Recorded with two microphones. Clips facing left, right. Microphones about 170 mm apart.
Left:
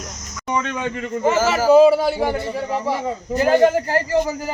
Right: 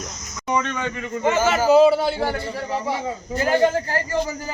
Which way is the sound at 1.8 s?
10° left (ahead or behind).